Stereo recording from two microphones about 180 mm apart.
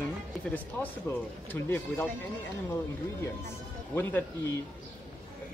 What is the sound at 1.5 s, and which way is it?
Speech, 10° left (ahead or behind).